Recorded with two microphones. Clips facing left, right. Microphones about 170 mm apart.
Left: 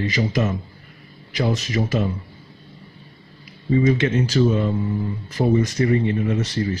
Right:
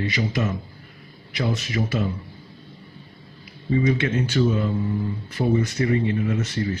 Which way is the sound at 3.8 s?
40° left (ahead or behind).